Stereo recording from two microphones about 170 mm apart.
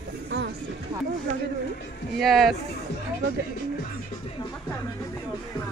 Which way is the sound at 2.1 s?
Centre (ahead or behind).